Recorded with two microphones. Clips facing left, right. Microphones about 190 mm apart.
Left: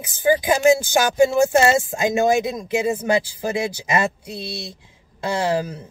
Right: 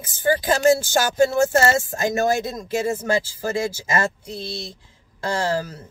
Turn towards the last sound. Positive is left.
turn(degrees=15)  # may be behind; listen again after turning